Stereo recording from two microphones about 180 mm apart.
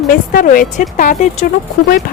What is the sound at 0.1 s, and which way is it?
Speech, 50° left (ahead or behind).